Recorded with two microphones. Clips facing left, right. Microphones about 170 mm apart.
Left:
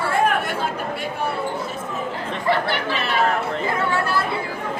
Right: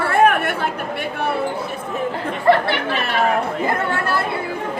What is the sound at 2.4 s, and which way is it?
Chatter, 60° right (ahead or behind).